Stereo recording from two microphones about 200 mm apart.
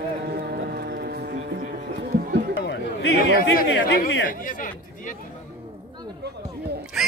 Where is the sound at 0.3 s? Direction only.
50° right (ahead or behind).